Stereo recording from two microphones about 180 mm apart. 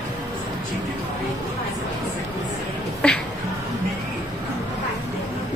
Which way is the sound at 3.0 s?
5° left (ahead or behind).